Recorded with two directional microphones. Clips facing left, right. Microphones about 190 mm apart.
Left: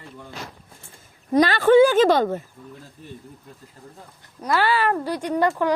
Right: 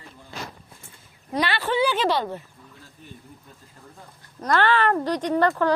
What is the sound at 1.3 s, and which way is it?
A woman's voice, 45° left (ahead or behind).